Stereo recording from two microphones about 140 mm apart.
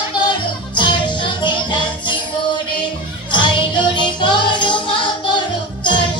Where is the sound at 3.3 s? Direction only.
35° left (ahead or behind).